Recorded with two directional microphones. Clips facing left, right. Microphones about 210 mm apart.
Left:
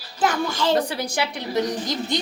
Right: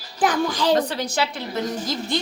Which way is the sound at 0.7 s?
10° left (ahead or behind).